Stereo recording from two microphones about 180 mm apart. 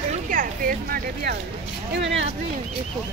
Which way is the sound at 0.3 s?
50° right (ahead or behind).